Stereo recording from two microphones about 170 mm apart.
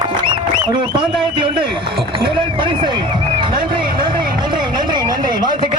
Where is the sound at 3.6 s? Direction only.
30° right (ahead or behind).